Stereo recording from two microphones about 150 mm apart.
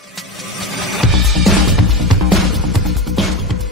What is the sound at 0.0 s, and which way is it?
Music, centre (ahead or behind).